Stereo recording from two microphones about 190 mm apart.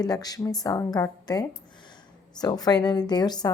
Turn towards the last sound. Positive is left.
turn(degrees=20)  # may be behind; listen again after turning